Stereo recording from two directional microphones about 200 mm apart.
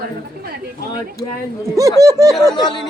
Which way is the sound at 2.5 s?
20° left (ahead or behind).